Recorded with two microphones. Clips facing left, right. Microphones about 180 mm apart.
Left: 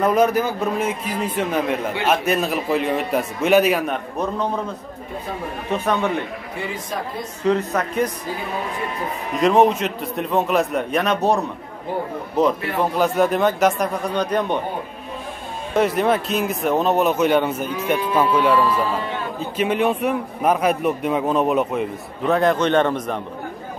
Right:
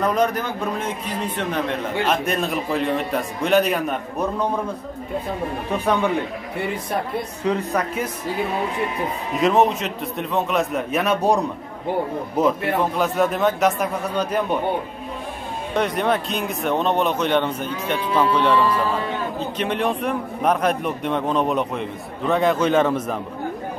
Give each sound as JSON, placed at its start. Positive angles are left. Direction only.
{"t": 0.0, "sound": "a man's voice", "side_deg": 5}
{"t": 6.7, "sound": "speech", "side_deg": -60}
{"t": 7.4, "sound": "speech", "side_deg": -10}
{"t": 9.4, "sound": "a man's voice", "side_deg": 0}
{"t": 12.4, "sound": "a man's voice", "side_deg": -10}
{"t": 15.7, "sound": "a man's voice", "side_deg": 5}